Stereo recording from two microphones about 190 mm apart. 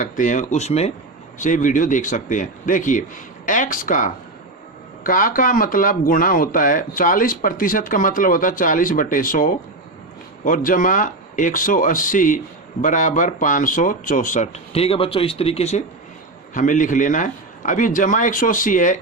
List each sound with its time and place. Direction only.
0.0 s speech: 40° left (ahead or behind)